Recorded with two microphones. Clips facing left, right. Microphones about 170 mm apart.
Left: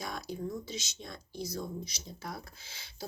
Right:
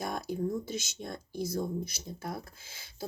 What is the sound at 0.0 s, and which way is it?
Speech, 55° right (ahead or behind).